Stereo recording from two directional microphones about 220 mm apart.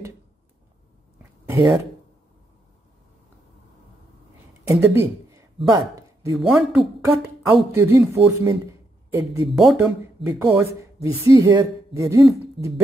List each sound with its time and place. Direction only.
1.4 s a sound: 10° right (ahead or behind)
4.6 s speech: 10° right (ahead or behind)
6.3 s speech: centre (ahead or behind)
9.5 s speech: centre (ahead or behind)